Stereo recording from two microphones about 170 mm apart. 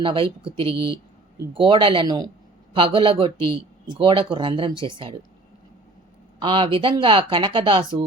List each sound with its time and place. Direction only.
0.0 s speech: 30° right (ahead or behind)
6.4 s speech: 30° right (ahead or behind)